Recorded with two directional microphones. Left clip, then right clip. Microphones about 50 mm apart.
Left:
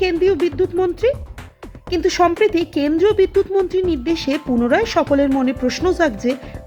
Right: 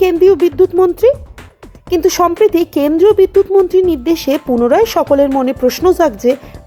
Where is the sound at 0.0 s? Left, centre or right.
Right.